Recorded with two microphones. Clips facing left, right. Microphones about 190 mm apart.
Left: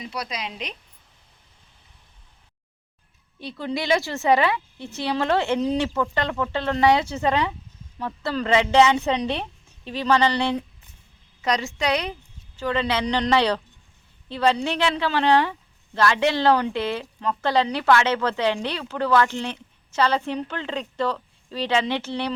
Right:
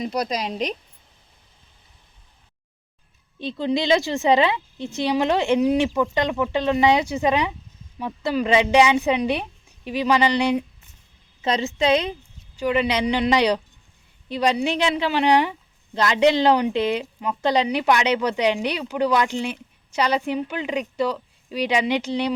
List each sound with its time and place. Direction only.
0.0 s speech: 40° right (ahead or behind)
3.3 s a woman's voice: 20° right (ahead or behind)